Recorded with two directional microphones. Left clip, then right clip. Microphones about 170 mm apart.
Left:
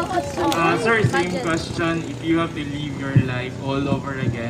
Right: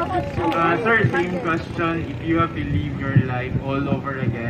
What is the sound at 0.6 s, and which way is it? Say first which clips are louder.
Speech: right 1 dB; 20° left (ahead or behind).